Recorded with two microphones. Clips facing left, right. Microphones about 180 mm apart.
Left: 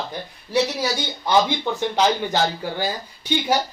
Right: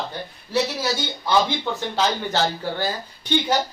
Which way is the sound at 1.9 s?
15° left (ahead or behind).